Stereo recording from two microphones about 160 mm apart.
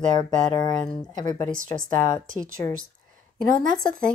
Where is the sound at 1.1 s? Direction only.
50° right (ahead or behind).